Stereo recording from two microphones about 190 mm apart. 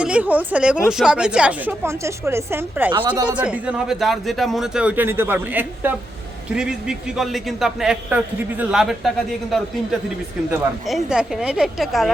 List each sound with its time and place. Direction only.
0.0 s speech: 5° right (ahead or behind)
2.9 s speech: 25° right (ahead or behind)
3.2 s a man's voice: 5° right (ahead or behind)
10.5 s a man's voice: centre (ahead or behind)